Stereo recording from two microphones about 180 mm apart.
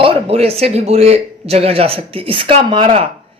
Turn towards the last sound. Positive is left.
turn(degrees=-30)  # may be behind; listen again after turning